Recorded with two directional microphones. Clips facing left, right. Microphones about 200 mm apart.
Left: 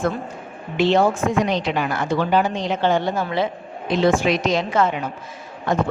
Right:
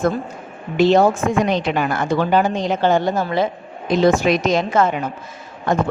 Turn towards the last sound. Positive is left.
turn(degrees=-50)  # may be behind; listen again after turning